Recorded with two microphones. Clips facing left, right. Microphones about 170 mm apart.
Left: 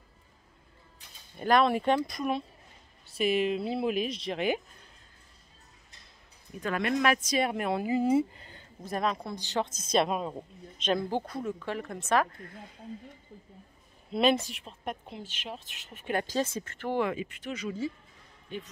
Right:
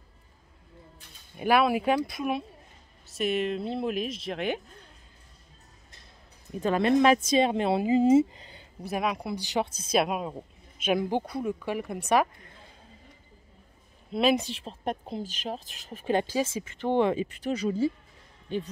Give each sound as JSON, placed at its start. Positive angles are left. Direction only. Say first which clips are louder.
{"t": 1.3, "sound": "speech", "louder": "right 1 dB", "side_deg": -10}
{"t": 6.6, "sound": "speech", "louder": "right 6 dB", "side_deg": -30}
{"t": 14.3, "sound": "a woman's voice", "louder": "right 3 dB", "side_deg": -25}
{"t": 16.5, "sound": "a woman's voice", "louder": "right 5 dB", "side_deg": -20}